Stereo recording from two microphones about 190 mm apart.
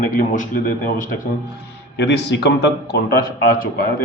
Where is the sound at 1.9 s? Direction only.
65° left (ahead or behind).